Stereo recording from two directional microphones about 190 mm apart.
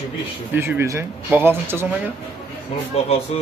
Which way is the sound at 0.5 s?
15° right (ahead or behind).